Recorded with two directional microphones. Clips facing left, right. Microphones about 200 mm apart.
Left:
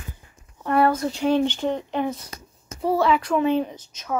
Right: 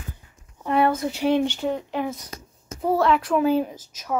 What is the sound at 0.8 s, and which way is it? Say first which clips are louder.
A woman's voice: left 1 dB; 20° right (ahead or behind).